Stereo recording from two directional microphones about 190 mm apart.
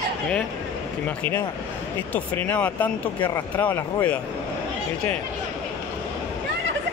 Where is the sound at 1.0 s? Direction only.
10° left (ahead or behind).